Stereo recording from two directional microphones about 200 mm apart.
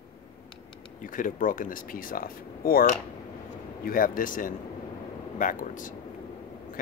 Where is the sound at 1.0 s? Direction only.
45° left (ahead or behind).